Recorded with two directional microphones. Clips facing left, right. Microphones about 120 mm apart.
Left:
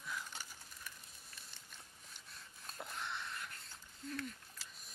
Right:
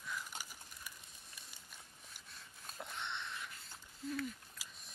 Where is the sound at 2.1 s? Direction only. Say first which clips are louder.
Even; centre (ahead or behind).